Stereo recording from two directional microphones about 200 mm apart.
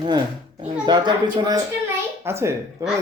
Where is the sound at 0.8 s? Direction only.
20° right (ahead or behind).